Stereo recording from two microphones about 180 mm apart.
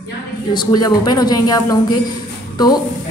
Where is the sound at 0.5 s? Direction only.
25° left (ahead or behind).